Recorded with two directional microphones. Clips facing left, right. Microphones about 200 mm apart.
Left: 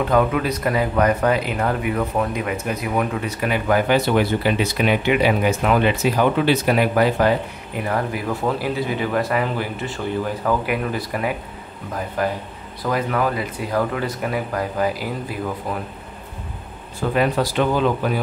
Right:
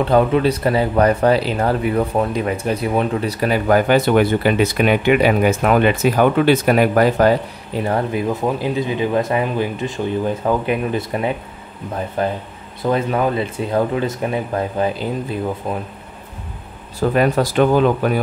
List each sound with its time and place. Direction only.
0.0 s speech: 30° right (ahead or behind)
7.7 s a man's voice: 30° right (ahead or behind)
17.1 s speech: 50° right (ahead or behind)